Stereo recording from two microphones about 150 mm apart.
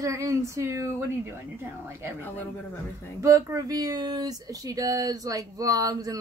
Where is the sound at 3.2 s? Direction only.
20° right (ahead or behind).